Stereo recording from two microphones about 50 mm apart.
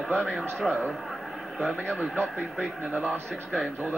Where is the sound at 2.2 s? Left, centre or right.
Right.